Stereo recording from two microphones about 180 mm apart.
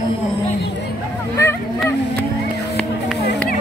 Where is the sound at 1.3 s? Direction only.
15° left (ahead or behind).